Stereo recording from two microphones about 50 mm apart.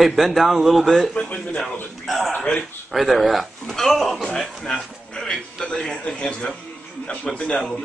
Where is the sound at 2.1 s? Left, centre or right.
Centre.